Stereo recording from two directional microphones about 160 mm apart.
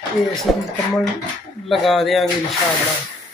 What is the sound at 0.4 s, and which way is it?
Speech, centre (ahead or behind).